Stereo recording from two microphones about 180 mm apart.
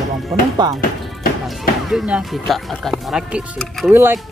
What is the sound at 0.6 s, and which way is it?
Speech, 25° right (ahead or behind).